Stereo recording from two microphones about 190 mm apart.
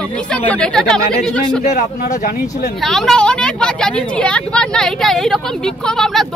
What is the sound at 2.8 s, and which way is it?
Speech, centre (ahead or behind).